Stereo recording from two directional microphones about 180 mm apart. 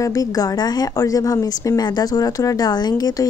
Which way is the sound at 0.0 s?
20° left (ahead or behind).